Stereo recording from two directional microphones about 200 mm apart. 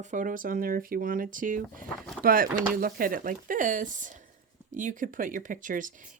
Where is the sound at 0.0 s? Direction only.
40° right (ahead or behind).